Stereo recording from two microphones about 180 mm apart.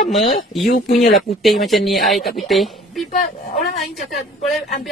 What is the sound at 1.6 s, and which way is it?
Speech, centre (ahead or behind).